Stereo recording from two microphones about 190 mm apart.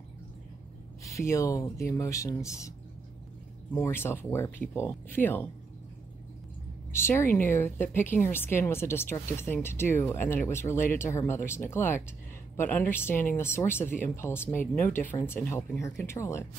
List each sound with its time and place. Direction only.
1.0 s a woman's voice: 15° left (ahead or behind)
3.7 s a woman's voice: 15° left (ahead or behind)
6.9 s a woman's voice: 15° left (ahead or behind)
13.1 s speech: 45° left (ahead or behind)
13.4 s a woman's voice: 15° left (ahead or behind)